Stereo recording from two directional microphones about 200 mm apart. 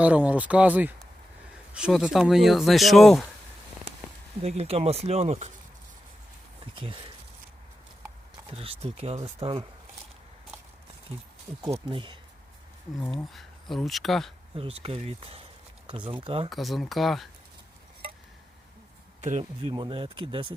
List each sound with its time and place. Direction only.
0.0 s speech: 5° right (ahead or behind)
4.4 s speech: 30° right (ahead or behind)
6.7 s speech: 25° right (ahead or behind)
8.4 s speech: 30° right (ahead or behind)
11.7 s speech: 25° right (ahead or behind)
13.0 s speech: centre (ahead or behind)
14.5 s speech: 30° right (ahead or behind)
16.5 s speech: centre (ahead or behind)
19.2 s speech: 30° right (ahead or behind)